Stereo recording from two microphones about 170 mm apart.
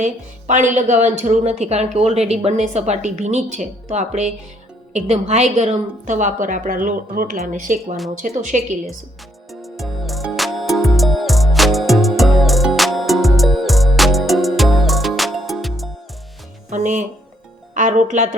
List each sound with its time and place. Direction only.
0.0 s a woman's voice: 45° right (ahead or behind)
9.5 s music: centre (ahead or behind)
16.6 s music: 45° right (ahead or behind)
17.7 s speech: 45° right (ahead or behind)